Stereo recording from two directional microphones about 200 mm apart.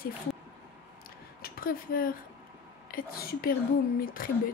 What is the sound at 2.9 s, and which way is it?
Speech, 45° left (ahead or behind).